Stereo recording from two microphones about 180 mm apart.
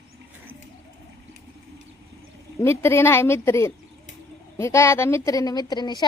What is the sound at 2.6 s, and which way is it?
A woman's voice, 15° left (ahead or behind).